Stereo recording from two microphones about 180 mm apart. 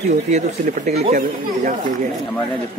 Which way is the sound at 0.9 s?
35° right (ahead or behind).